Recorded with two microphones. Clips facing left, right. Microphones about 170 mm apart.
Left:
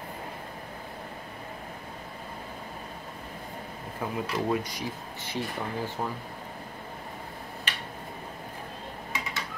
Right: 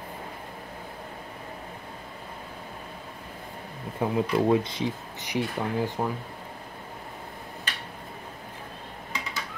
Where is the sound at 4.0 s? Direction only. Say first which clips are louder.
Right 6 dB; 25° right (ahead or behind).